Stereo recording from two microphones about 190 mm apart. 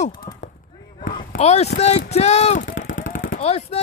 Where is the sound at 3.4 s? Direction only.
35° left (ahead or behind).